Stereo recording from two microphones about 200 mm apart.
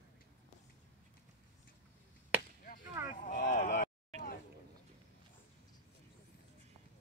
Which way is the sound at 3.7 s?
50° left (ahead or behind).